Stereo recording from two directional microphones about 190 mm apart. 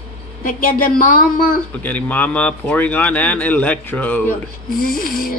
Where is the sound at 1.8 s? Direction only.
10° left (ahead or behind).